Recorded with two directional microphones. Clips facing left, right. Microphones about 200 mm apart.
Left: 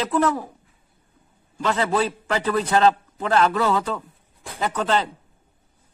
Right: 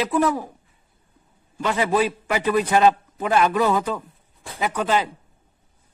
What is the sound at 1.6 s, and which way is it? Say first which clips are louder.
A man's voice: right 1 dB; 10° right (ahead or behind).